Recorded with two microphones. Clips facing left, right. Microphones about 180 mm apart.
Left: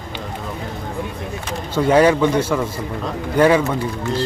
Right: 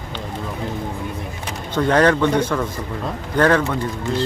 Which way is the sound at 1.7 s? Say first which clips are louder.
Left 2 dB; 10° left (ahead or behind).